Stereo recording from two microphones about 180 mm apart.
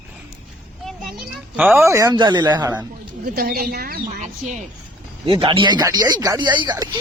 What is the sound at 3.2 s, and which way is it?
Speech, 60° right (ahead or behind).